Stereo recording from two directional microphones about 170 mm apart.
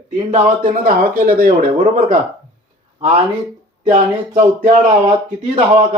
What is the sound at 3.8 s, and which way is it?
Speech, 45° right (ahead or behind).